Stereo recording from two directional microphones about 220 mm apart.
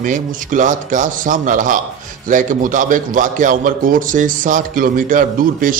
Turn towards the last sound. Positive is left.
turn(degrees=-35)  # may be behind; listen again after turning